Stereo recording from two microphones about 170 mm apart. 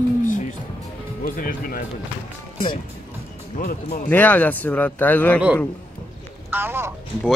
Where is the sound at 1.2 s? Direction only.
55° left (ahead or behind).